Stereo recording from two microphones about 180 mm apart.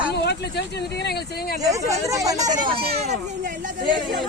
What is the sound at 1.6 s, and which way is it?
Speech, 20° right (ahead or behind).